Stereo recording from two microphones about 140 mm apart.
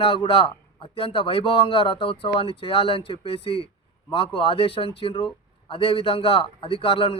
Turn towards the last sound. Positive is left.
turn(degrees=40)  # may be behind; listen again after turning